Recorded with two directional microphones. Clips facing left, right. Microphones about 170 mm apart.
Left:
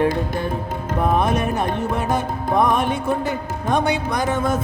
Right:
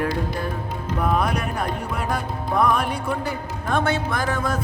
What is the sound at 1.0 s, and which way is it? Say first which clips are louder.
Speech: left 4 dB; 25° left (ahead or behind).